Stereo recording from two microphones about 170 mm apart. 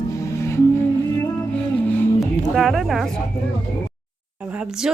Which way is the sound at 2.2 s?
Centre (ahead or behind).